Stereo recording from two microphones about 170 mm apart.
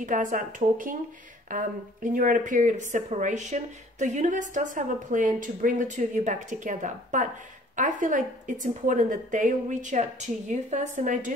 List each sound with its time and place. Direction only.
0.0 s a woman's voice: 50° right (ahead or behind)